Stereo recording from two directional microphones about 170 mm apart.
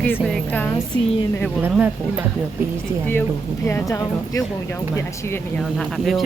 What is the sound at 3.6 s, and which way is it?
Speech, 20° left (ahead or behind).